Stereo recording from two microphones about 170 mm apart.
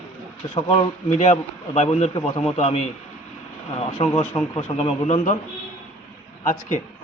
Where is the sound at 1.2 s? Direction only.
40° left (ahead or behind).